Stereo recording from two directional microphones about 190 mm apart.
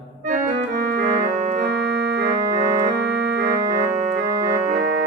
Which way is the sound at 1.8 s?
60° right (ahead or behind).